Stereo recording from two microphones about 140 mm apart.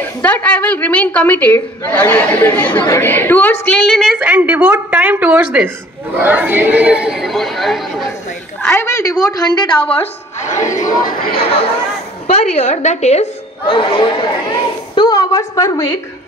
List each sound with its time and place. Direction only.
0.0 s a woman's voice: 10° left (ahead or behind)
8.6 s a woman's voice: 20° left (ahead or behind); by 10.0 s 40° left (ahead or behind)
11.2 s a woman's voice: 40° left (ahead or behind)
13.7 s speech: 35° left (ahead or behind)
15.0 s a woman's voice: 25° left (ahead or behind)